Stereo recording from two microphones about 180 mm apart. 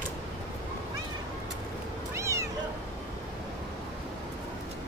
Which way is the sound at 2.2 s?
15° right (ahead or behind).